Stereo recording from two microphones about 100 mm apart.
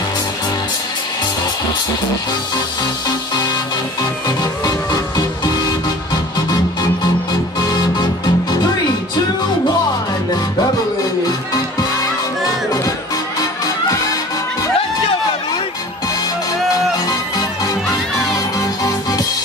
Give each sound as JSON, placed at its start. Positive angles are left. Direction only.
{"t": 4.4, "sound": "music", "side_deg": 40}
{"t": 7.7, "sound": "music", "side_deg": 45}
{"t": 18.3, "sound": "music", "side_deg": 35}